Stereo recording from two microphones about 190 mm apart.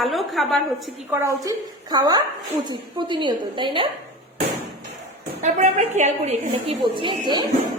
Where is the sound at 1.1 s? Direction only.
15° right (ahead or behind).